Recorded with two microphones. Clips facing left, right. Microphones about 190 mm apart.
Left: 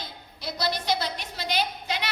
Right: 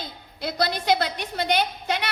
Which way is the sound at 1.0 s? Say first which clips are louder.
Right 5 dB; 55° right (ahead or behind).